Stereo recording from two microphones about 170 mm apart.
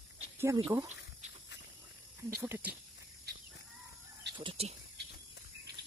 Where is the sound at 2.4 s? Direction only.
10° right (ahead or behind).